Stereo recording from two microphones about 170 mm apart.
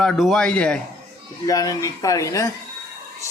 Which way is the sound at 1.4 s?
20° left (ahead or behind).